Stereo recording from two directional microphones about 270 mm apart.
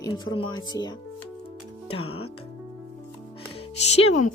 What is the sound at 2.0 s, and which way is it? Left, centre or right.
Speech, left.